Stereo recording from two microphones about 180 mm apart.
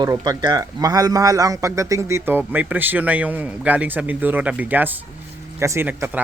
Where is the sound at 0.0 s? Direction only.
20° right (ahead or behind).